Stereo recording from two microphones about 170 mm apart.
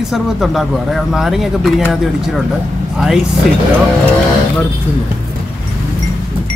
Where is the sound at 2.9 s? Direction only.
Centre (ahead or behind).